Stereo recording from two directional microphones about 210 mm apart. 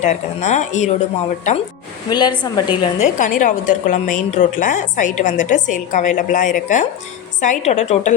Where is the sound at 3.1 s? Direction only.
40° left (ahead or behind).